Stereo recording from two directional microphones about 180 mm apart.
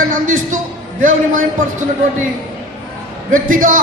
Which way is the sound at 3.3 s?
45° right (ahead or behind).